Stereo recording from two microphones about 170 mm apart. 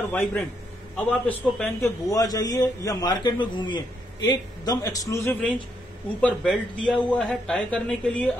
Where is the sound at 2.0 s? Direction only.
20° left (ahead or behind); by 8.3 s 5° left (ahead or behind).